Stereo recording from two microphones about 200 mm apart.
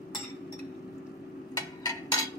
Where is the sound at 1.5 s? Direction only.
20° left (ahead or behind).